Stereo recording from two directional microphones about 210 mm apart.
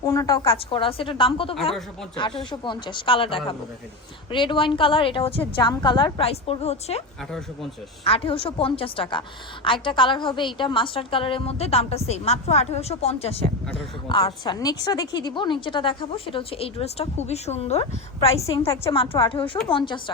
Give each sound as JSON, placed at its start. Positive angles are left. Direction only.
{"t": 0.0, "sound": "a woman's voice", "side_deg": 15}
{"t": 7.3, "sound": "speech", "side_deg": 0}
{"t": 8.0, "sound": "a woman's voice", "side_deg": 25}
{"t": 18.6, "sound": "a woman's voice", "side_deg": 15}
{"t": 18.9, "sound": "a woman's voice", "side_deg": 25}